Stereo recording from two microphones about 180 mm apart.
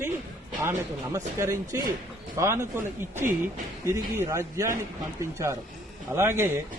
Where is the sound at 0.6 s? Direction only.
15° right (ahead or behind).